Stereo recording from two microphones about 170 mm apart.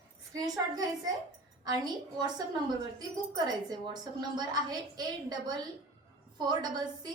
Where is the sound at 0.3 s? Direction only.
20° right (ahead or behind).